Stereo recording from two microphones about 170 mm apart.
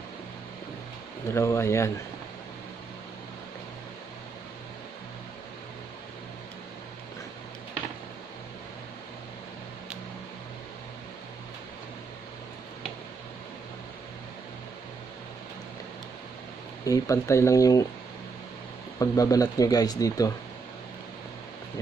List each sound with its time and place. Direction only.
1.3 s speech: 15° left (ahead or behind)
16.8 s speech: 20° left (ahead or behind)
18.9 s speech: 20° left (ahead or behind)